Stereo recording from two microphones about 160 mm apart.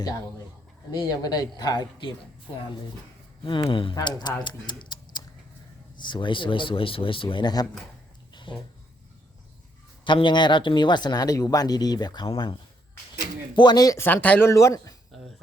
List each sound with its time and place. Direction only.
0.9 s speech: 25° left (ahead or behind)
3.4 s speech: 30° left (ahead or behind)
8.3 s a sound: 30° left (ahead or behind)
10.0 s speech: 30° left (ahead or behind)
13.6 s speech: 25° left (ahead or behind)